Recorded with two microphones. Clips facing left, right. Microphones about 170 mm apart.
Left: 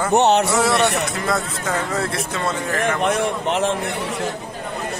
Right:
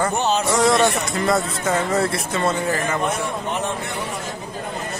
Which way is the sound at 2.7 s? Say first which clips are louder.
Left 2 dB; 75° left (ahead or behind).